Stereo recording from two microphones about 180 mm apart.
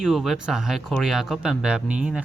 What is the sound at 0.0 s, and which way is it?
Speech, centre (ahead or behind).